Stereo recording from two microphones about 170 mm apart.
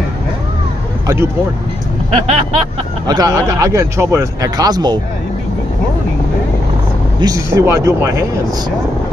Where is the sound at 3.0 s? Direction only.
20° right (ahead or behind).